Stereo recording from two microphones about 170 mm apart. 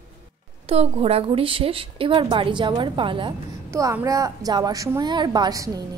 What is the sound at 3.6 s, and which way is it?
A woman's voice, 20° right (ahead or behind).